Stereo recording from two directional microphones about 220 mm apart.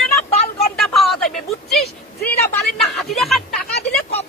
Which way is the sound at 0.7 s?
Centre (ahead or behind).